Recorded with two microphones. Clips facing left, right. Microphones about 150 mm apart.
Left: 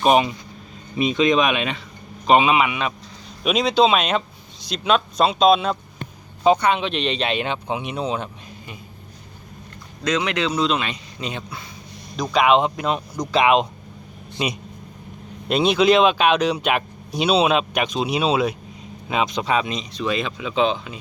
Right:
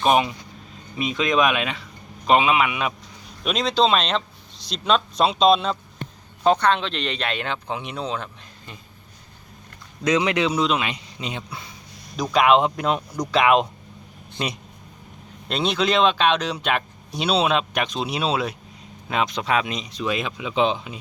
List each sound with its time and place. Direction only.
0.0 s speech: 5° left (ahead or behind)
3.4 s speech: 10° left (ahead or behind)
10.0 s speech: 15° right (ahead or behind)
10.9 s speech: 20° right (ahead or behind)
12.1 s speech: 5° right (ahead or behind)
14.4 s speech: 10° left (ahead or behind); by 21.0 s 10° right (ahead or behind)